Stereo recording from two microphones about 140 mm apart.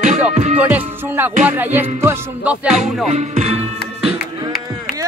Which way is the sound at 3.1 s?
50° right (ahead or behind).